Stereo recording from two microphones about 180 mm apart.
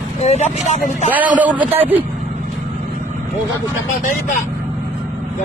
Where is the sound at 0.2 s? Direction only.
40° left (ahead or behind).